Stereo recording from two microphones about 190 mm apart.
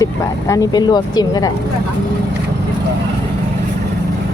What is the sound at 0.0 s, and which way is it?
Speech, 15° left (ahead or behind).